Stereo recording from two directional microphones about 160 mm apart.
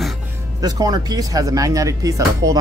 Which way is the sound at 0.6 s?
25° right (ahead or behind).